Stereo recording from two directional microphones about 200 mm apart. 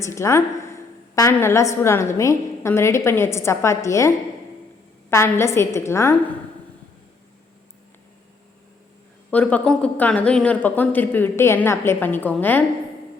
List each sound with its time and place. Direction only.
0.0 s a woman's voice: 15° left (ahead or behind)
5.1 s a woman's voice: 15° left (ahead or behind)
9.3 s a woman's voice: 5° left (ahead or behind)